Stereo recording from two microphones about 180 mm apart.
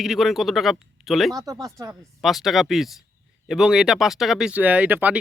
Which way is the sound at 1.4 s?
20° right (ahead or behind).